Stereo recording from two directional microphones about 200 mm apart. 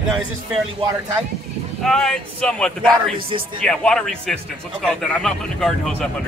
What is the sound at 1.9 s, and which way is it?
Speech, 5° left (ahead or behind).